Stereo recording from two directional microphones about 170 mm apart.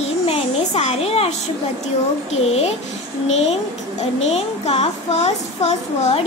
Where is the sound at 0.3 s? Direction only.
35° left (ahead or behind).